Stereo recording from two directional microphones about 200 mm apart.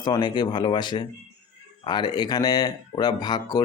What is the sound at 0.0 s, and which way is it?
Speech, 20° left (ahead or behind).